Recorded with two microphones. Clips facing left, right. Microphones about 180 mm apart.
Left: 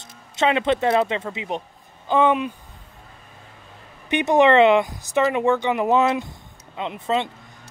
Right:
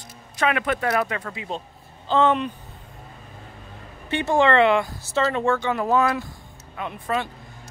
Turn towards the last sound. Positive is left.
turn(degrees=20)  # may be behind; listen again after turning